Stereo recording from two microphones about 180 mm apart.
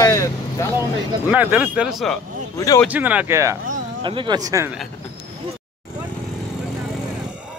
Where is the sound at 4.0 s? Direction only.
25° right (ahead or behind).